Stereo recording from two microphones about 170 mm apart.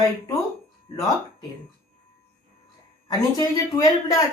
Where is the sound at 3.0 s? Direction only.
20° left (ahead or behind).